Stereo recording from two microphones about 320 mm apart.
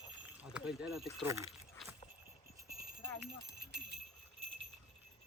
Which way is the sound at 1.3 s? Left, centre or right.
Centre.